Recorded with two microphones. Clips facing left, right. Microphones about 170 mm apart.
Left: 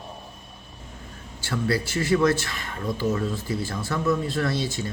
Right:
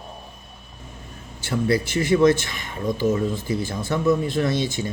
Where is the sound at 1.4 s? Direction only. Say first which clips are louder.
Right 4 dB; 20° right (ahead or behind).